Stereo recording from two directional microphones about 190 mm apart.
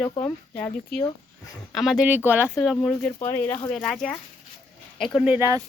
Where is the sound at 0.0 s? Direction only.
10° left (ahead or behind).